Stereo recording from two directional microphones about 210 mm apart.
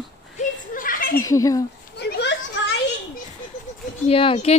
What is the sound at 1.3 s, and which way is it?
Speech, 15° left (ahead or behind).